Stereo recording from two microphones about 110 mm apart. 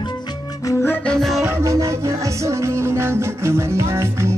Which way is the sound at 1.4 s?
25° right (ahead or behind).